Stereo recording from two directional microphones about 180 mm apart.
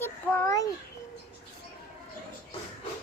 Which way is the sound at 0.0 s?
15° left (ahead or behind).